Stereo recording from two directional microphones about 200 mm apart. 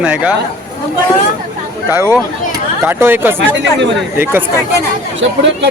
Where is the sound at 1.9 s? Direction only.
10° right (ahead or behind).